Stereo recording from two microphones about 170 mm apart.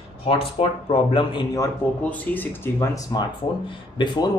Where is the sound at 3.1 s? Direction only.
25° left (ahead or behind).